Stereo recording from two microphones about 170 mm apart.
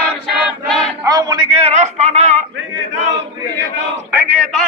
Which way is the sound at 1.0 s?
20° right (ahead or behind).